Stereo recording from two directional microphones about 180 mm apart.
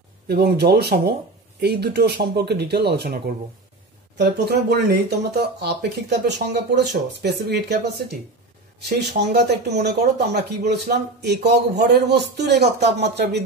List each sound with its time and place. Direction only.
0.3 s speech: 60° right (ahead or behind)
8.8 s speech: 65° right (ahead or behind)